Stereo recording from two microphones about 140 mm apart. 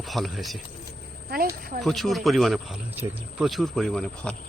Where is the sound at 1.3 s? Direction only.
90° right.